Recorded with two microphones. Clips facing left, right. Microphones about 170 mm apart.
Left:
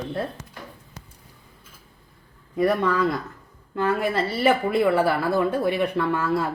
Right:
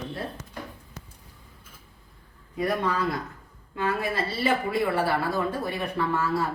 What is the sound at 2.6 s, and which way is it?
Speech, 60° left (ahead or behind).